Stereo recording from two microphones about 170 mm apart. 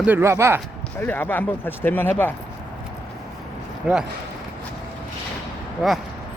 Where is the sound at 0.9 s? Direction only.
10° left (ahead or behind).